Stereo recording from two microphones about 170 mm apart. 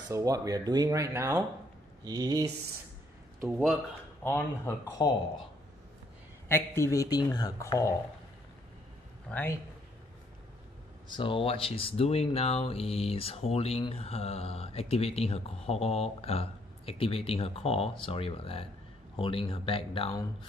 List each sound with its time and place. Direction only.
0.1 s speech: 20° right (ahead or behind)
3.4 s speech: 5° right (ahead or behind)
4.2 s speech: 15° left (ahead or behind)
6.5 s speech: 15° left (ahead or behind)
9.3 s speech: 10° left (ahead or behind)
11.1 s speech: 30° left (ahead or behind)